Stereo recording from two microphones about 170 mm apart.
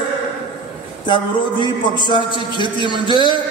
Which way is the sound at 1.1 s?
25° left (ahead or behind).